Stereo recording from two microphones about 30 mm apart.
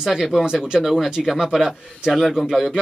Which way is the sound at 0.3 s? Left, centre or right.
Right.